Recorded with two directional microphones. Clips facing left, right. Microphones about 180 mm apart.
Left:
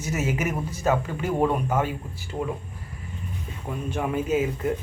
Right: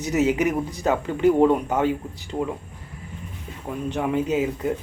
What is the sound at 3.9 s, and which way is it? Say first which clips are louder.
Speech: right 2 dB; 15° right (ahead or behind).